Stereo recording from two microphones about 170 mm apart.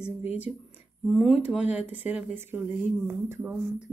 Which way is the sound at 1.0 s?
5° right (ahead or behind).